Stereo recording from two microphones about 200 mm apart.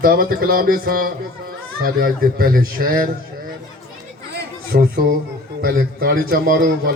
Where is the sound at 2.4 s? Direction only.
45° right (ahead or behind).